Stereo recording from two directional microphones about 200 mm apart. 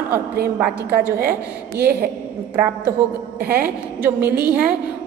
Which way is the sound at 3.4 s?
50° right (ahead or behind).